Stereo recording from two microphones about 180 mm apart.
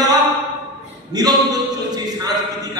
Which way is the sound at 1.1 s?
20° right (ahead or behind).